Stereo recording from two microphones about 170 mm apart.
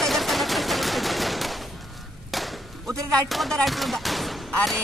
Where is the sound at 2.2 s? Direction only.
Centre (ahead or behind).